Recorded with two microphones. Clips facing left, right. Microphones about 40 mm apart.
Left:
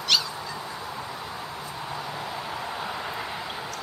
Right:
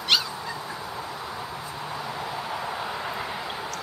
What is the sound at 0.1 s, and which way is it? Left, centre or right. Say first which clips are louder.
Goose: right 1 dB; centre.